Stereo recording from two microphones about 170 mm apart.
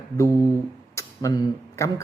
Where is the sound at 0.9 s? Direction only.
20° left (ahead or behind).